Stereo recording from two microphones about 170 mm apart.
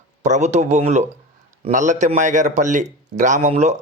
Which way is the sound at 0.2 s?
45° right (ahead or behind).